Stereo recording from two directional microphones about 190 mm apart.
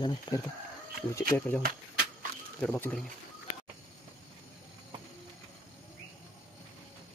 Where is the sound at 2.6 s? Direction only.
5° left (ahead or behind).